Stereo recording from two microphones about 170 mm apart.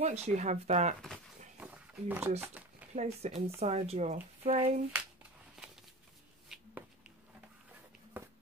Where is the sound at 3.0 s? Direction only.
40° right (ahead or behind).